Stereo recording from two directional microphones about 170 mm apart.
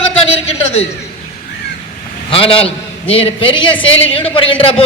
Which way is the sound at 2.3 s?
30° left (ahead or behind).